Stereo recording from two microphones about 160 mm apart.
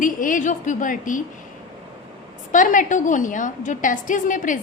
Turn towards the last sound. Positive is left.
turn(degrees=55)  # may be behind; listen again after turning